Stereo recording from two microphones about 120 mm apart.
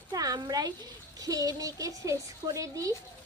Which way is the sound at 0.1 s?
30° right (ahead or behind).